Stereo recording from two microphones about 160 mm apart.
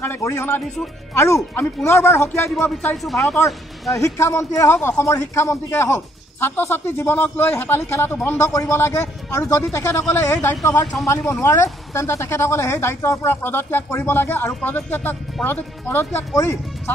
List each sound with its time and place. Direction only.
0.0 s speech: 15° left (ahead or behind); by 3.9 s centre (ahead or behind)
3.9 s a man's voice: 20° left (ahead or behind)